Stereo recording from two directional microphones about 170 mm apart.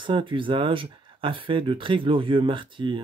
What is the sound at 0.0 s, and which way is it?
Speech, 30° right (ahead or behind).